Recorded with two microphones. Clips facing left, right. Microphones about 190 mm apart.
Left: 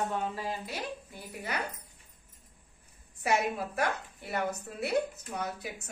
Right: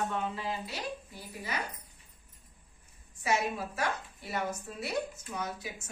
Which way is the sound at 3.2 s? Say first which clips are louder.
Left 2 dB; 60° left (ahead or behind).